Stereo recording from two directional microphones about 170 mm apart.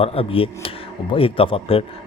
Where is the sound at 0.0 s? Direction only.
35° left (ahead or behind).